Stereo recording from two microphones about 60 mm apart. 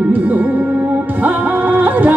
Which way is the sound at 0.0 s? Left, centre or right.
Right.